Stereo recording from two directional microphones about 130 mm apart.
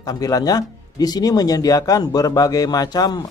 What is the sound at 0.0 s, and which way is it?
Speech, 30° left (ahead or behind).